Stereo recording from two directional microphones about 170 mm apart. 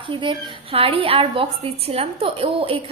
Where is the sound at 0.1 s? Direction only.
30° right (ahead or behind).